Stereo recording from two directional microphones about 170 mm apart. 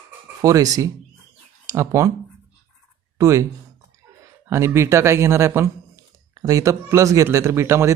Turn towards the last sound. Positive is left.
turn(degrees=-15)  # may be behind; listen again after turning